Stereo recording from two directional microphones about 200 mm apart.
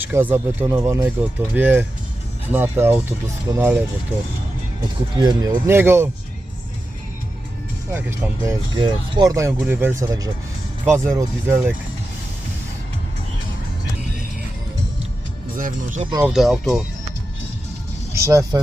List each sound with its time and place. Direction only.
0.0 s speech: 10° right (ahead or behind)
5.1 s speech: 20° right (ahead or behind)
8.4 s speech: 20° right (ahead or behind)
15.5 s speech: 40° right (ahead or behind)
16.2 s speech: centre (ahead or behind)
18.1 s speech: 15° right (ahead or behind)